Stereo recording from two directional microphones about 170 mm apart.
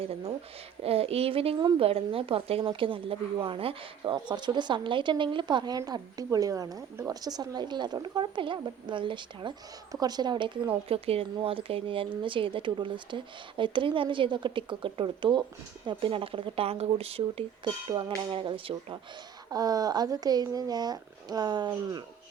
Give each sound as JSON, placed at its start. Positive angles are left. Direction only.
{"t": 0.0, "sound": "a woman's voice", "side_deg": -35}